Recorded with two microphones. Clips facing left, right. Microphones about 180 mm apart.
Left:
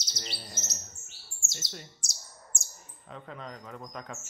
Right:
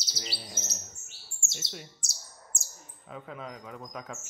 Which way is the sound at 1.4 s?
Centre (ahead or behind).